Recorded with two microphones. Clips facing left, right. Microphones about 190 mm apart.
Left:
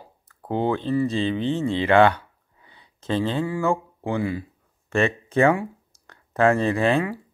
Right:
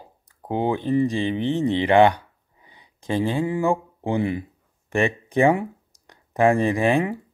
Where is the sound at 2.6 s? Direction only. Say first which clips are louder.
Even; 15° right (ahead or behind).